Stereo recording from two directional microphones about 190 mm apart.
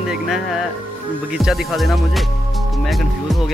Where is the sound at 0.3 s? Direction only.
Centre (ahead or behind).